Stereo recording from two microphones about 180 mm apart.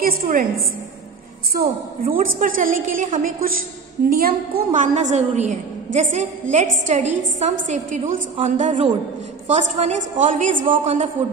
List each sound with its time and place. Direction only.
0.0 s a woman's voice: 50° right (ahead or behind)
4.7 s a woman's voice: 45° right (ahead or behind)